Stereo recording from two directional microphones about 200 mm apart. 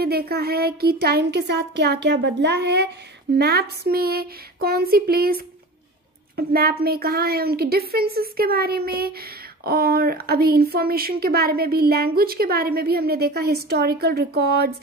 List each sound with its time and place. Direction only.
0.0 s speech: 50° right (ahead or behind)